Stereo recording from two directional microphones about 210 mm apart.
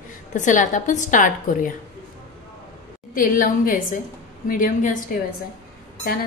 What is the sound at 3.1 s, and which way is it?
A woman's voice, 40° left (ahead or behind).